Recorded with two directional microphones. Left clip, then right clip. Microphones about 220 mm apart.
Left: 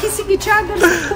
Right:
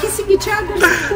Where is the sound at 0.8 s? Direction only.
15° left (ahead or behind).